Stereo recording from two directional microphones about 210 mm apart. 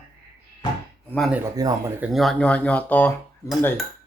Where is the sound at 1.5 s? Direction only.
15° right (ahead or behind).